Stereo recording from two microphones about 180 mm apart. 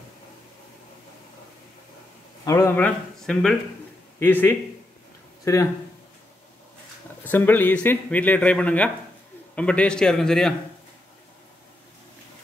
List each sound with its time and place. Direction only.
2.4 s speech: 15° left (ahead or behind)
7.2 s a man's voice: 10° left (ahead or behind)